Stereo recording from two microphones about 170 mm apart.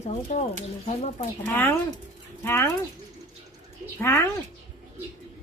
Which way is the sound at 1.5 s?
10° left (ahead or behind).